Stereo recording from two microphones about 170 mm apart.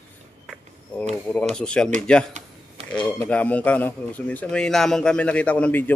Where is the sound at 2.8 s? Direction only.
35° right (ahead or behind).